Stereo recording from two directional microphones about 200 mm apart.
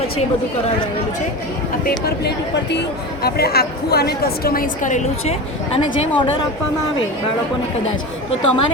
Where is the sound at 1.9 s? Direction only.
50° left (ahead or behind).